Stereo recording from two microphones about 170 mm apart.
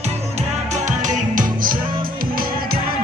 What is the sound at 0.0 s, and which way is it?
Music, 40° right (ahead or behind).